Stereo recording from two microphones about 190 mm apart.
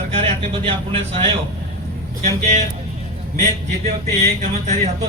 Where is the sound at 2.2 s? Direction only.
35° right (ahead or behind).